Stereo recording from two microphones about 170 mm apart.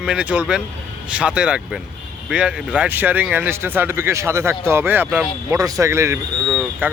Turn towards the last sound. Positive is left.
turn(degrees=-5)  # may be behind; listen again after turning